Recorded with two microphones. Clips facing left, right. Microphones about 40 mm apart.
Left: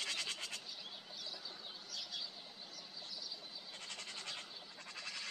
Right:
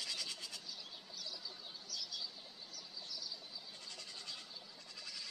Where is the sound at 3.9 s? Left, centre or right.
Left.